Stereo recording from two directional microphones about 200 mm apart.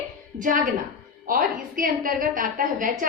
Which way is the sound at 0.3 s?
40° right (ahead or behind).